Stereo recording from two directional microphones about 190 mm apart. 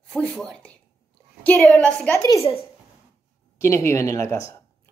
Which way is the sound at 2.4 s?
30° left (ahead or behind).